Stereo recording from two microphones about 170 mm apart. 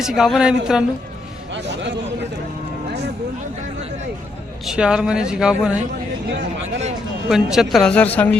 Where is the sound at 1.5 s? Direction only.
90° right.